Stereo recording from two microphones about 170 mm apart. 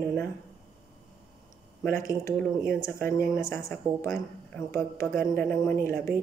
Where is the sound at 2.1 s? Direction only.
15° left (ahead or behind).